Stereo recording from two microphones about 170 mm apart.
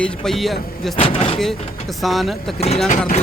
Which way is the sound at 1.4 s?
Centre (ahead or behind).